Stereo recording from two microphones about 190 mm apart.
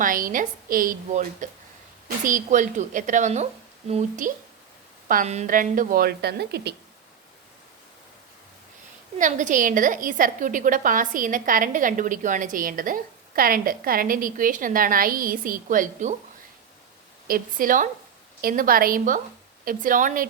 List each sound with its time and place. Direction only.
0.0 s a woman's voice: 45° right (ahead or behind)
9.1 s a woman's voice: 40° right (ahead or behind)
17.2 s a woman's voice: 50° right (ahead or behind)